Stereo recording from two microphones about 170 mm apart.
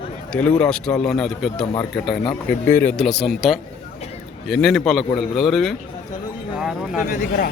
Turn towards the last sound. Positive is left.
turn(degrees=55)  # may be behind; listen again after turning